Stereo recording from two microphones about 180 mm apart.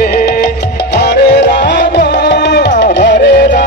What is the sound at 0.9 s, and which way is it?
Music, 70° left (ahead or behind).